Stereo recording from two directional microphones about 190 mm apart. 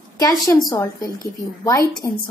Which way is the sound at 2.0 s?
15° left (ahead or behind).